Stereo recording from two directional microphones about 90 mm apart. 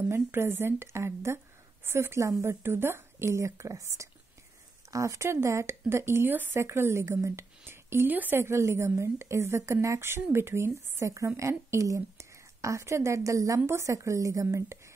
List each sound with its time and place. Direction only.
0.1 s speech: 25° right (ahead or behind)